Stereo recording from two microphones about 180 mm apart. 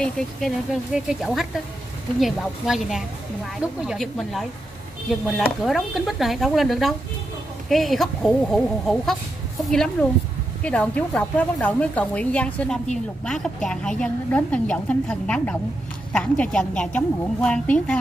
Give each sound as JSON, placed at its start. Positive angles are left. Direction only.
{"t": 0.0, "sound": "a woman's voice", "side_deg": 0}